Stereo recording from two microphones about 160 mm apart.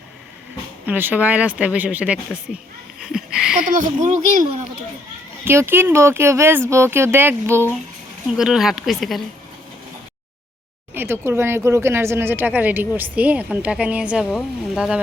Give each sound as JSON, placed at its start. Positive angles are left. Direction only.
{"t": 0.9, "sound": "speech", "side_deg": -10}
{"t": 3.0, "sound": "a sound", "side_deg": -5}
{"t": 3.6, "sound": "a child's voice", "side_deg": -55}
{"t": 5.5, "sound": "speech", "side_deg": -15}
{"t": 8.3, "sound": "speech", "side_deg": -5}
{"t": 10.9, "sound": "speech", "side_deg": -15}